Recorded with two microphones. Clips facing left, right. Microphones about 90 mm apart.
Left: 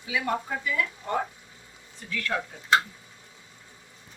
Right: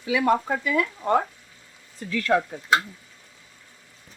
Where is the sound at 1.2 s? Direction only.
20° left (ahead or behind).